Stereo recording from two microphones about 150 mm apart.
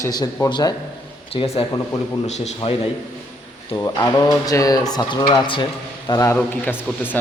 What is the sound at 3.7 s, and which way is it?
Speech, 25° left (ahead or behind).